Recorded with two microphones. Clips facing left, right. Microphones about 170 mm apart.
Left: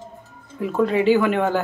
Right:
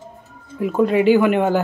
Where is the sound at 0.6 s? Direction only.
15° right (ahead or behind).